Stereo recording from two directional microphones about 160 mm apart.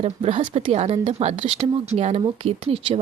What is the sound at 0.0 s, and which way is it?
Speech, 35° right (ahead or behind).